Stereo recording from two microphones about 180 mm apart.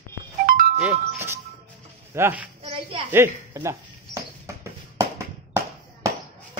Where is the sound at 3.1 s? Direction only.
15° right (ahead or behind).